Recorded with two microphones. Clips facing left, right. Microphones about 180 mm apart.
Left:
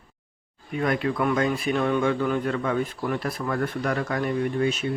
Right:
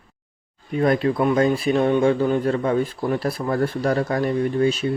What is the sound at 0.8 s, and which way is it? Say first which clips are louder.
Speech: right 5 dB; 35° right (ahead or behind).